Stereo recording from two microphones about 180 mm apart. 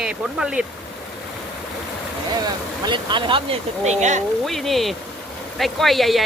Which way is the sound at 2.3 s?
25° right (ahead or behind).